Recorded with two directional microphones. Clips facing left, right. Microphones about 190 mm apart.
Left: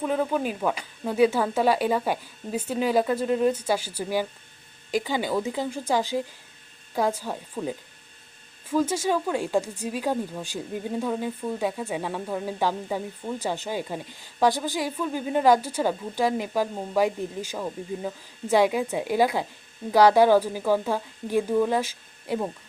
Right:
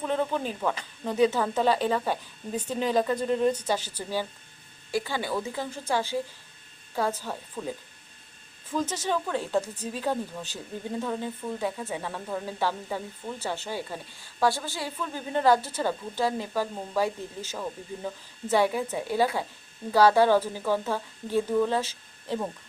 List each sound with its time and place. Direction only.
0.0 s a woman's voice: 5° left (ahead or behind)